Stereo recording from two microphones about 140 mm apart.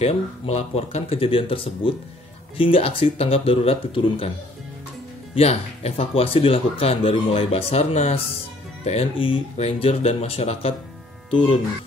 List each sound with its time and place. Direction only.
0.0 s speech: 50° left (ahead or behind)
5.3 s speech: 45° left (ahead or behind)